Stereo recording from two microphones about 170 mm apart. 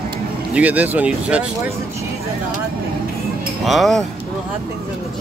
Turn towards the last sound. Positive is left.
turn(degrees=0)  # may be behind; listen again after turning